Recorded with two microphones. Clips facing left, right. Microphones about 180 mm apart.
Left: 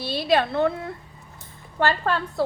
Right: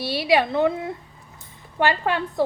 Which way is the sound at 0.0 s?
10° right (ahead or behind).